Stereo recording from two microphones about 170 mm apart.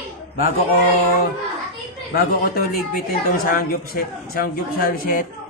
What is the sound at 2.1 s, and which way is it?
A man's voice, 60° left (ahead or behind).